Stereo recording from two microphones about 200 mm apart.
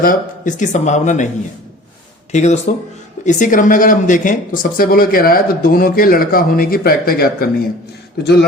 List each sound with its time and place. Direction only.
0.0 s speech: 40° left (ahead or behind)
2.3 s speech: 35° left (ahead or behind); by 8.4 s 55° left (ahead or behind)